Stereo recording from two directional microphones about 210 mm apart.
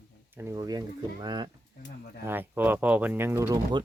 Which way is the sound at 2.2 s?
10° right (ahead or behind).